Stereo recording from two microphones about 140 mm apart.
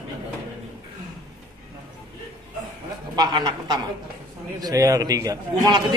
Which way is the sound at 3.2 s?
30° right (ahead or behind).